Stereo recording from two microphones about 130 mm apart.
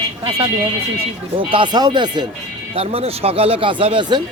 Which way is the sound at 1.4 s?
40° right (ahead or behind).